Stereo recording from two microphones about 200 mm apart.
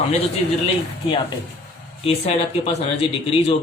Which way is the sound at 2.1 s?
30° left (ahead or behind).